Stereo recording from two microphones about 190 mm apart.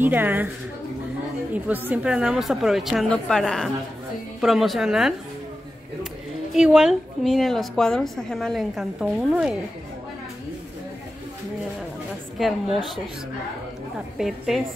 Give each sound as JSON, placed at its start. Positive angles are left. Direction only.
{"t": 0.0, "sound": "a woman's voice", "side_deg": -10}
{"t": 1.5, "sound": "a woman's voice", "side_deg": -10}
{"t": 6.5, "sound": "a woman's voice", "side_deg": -5}
{"t": 12.4, "sound": "a woman's voice", "side_deg": 0}
{"t": 14.1, "sound": "a woman's voice", "side_deg": 0}